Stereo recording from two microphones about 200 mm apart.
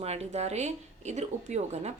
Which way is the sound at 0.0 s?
30° right (ahead or behind).